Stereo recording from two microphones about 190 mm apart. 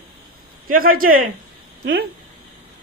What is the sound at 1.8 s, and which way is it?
Speech, 60° right (ahead or behind).